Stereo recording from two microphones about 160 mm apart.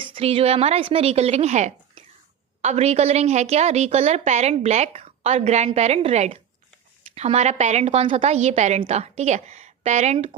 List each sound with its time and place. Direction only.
0.0 s a woman's voice: 35° right (ahead or behind)